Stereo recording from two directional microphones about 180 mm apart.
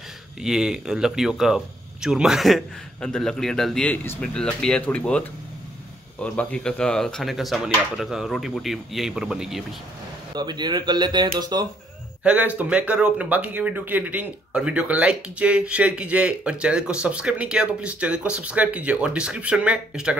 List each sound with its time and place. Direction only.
0.4 s speech: 5° right (ahead or behind)
10.3 s a man's voice: 25° right (ahead or behind)
12.2 s speech: 5° right (ahead or behind)